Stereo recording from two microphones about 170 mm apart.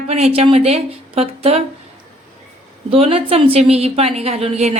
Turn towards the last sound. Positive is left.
turn(degrees=-40)  # may be behind; listen again after turning